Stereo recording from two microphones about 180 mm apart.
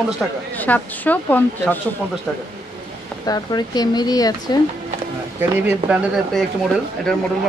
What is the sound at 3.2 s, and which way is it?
Speech, 20° left (ahead or behind).